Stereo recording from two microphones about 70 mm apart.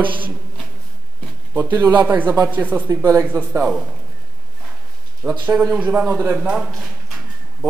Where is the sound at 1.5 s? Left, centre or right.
Right.